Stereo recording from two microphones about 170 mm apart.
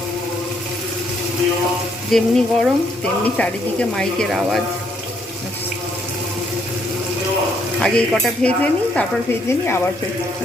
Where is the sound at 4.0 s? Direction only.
5° left (ahead or behind).